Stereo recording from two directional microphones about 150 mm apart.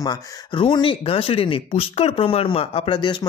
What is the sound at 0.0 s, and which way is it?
Speech, 30° left (ahead or behind).